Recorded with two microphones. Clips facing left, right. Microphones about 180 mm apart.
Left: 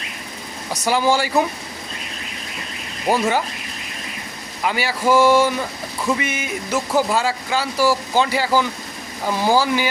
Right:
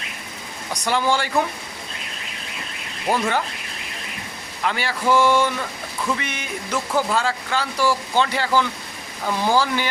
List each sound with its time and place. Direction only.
0.7 s speech: 5° left (ahead or behind)
3.1 s speech: 10° left (ahead or behind)
4.6 s speech: 10° left (ahead or behind)